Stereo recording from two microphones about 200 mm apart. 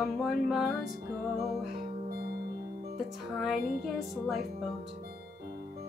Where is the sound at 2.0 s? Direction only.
50° right (ahead or behind).